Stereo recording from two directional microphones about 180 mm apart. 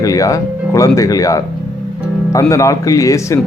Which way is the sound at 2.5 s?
20° left (ahead or behind).